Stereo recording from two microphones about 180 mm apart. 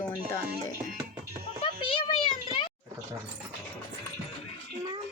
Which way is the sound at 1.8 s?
30° left (ahead or behind).